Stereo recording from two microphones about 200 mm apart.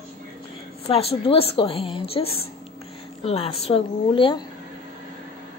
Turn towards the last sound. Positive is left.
turn(degrees=25)  # may be behind; listen again after turning